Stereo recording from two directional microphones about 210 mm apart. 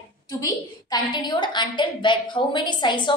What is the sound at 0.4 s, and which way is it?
A woman's voice, 20° left (ahead or behind).